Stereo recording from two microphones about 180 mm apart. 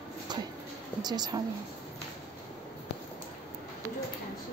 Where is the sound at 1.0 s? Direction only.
20° right (ahead or behind).